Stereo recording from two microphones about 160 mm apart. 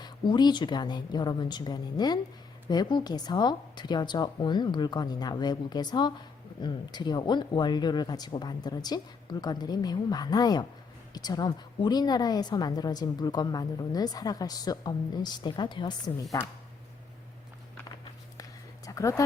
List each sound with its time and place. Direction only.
0.0 s a woman's voice: 25° left (ahead or behind)
18.9 s speech: 20° left (ahead or behind)